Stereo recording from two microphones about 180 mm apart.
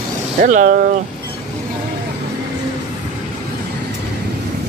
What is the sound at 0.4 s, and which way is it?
Speech, 50° right (ahead or behind).